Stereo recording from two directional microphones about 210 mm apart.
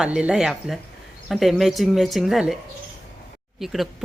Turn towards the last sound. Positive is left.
turn(degrees=0)  # may be behind; listen again after turning